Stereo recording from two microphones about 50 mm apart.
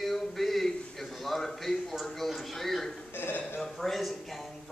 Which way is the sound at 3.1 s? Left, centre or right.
Left.